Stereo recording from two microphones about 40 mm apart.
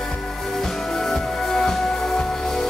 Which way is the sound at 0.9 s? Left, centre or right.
Centre.